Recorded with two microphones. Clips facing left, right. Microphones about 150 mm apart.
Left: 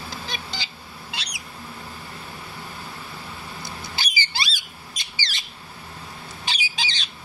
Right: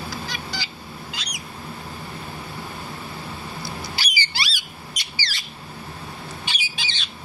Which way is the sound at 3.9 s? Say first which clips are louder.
Even; 20° left (ahead or behind).